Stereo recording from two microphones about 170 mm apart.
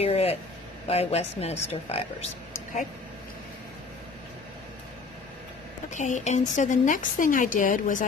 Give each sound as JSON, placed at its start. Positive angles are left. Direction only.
{"t": 0.0, "sound": "vehicle", "side_deg": 35}
{"t": 0.8, "sound": "speech", "side_deg": 40}
{"t": 5.9, "sound": "speech", "side_deg": 45}